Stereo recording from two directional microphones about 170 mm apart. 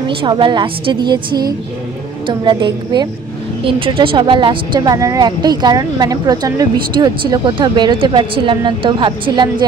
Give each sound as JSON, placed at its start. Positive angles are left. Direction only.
{"t": 0.0, "sound": "a woman's voice", "side_deg": -30}